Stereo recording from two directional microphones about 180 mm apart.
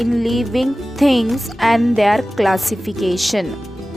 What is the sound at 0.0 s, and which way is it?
A woman's voice, centre (ahead or behind).